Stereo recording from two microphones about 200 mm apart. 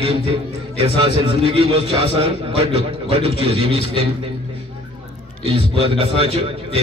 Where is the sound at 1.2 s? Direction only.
25° right (ahead or behind).